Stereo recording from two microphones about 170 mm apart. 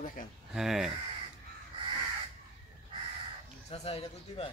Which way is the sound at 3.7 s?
35° left (ahead or behind).